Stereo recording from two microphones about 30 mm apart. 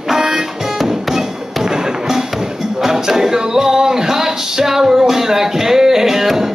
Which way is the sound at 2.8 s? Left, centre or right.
Centre.